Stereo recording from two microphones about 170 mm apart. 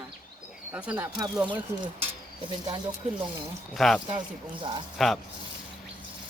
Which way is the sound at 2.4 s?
30° right (ahead or behind).